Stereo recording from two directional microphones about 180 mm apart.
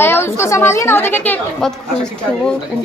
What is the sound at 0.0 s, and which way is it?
A woman's voice, 15° left (ahead or behind).